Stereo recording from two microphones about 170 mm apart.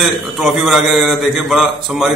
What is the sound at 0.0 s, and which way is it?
A man's voice, centre (ahead or behind).